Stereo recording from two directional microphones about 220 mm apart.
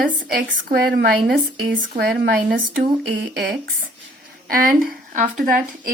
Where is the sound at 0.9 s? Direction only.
45° right (ahead or behind).